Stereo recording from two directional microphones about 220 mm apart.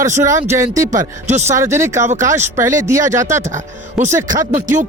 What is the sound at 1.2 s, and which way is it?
Speech, 30° right (ahead or behind).